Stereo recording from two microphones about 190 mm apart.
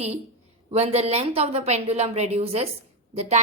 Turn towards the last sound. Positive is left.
turn(degrees=-35)  # may be behind; listen again after turning